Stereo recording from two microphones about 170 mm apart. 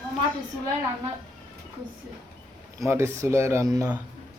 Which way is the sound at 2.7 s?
15° right (ahead or behind).